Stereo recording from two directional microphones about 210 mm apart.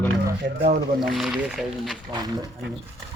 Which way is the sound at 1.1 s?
Centre (ahead or behind).